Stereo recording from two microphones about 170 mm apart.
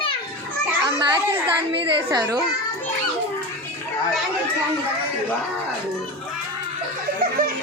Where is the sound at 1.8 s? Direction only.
30° right (ahead or behind).